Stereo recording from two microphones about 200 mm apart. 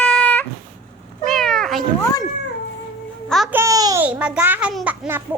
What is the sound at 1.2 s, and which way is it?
Cat, centre (ahead or behind).